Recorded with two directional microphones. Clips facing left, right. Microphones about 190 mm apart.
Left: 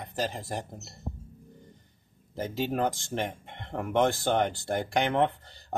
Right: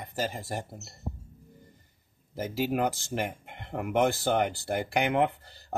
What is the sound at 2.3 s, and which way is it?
Speech, 5° right (ahead or behind).